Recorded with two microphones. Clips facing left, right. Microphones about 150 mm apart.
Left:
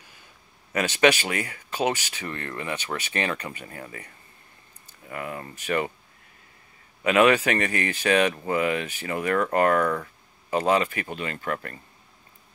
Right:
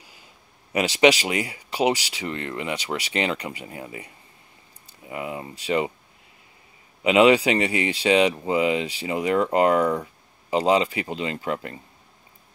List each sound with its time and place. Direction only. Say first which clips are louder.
0.7 s speech: right 3 dB; 15° right (ahead or behind)
7.0 s speech: right 3 dB; 20° right (ahead or behind)